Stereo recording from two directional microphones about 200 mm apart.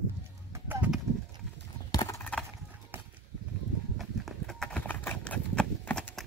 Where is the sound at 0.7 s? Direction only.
5° right (ahead or behind).